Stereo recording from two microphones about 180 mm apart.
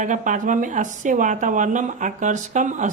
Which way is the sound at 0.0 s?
45° right (ahead or behind).